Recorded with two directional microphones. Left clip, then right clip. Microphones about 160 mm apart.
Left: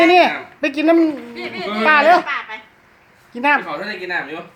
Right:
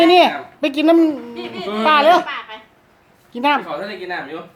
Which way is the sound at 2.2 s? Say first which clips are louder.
Left 3 dB; 10° left (ahead or behind).